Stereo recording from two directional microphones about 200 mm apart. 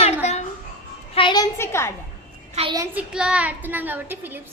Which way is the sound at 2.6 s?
25° right (ahead or behind).